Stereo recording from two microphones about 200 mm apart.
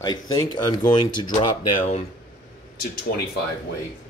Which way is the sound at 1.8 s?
35° left (ahead or behind).